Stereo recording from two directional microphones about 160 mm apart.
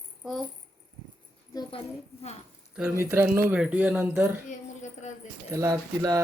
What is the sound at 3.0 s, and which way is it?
Speech, 15° right (ahead or behind).